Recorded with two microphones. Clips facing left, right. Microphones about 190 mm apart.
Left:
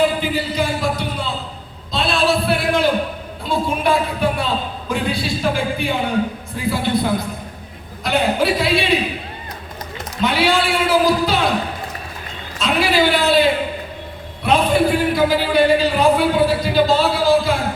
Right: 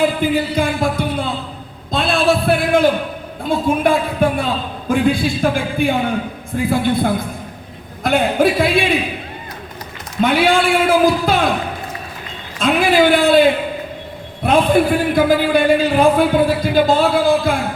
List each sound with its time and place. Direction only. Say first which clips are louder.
0.3 s music: right 3 dB; 50° right (ahead or behind)
1.9 s a sound: right 2 dB; 50° right (ahead or behind)
3.4 s a man's voice: right 4 dB; 50° right (ahead or behind)
10.2 s a man's voice: right 3 dB; 50° right (ahead or behind)
12.5 s a man's voice: right 4 dB; 50° right (ahead or behind)